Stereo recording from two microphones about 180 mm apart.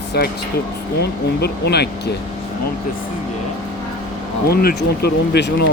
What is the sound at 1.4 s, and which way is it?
Speech, 65° left (ahead or behind).